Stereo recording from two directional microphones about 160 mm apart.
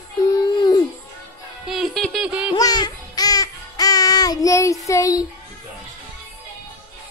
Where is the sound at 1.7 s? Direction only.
Centre (ahead or behind).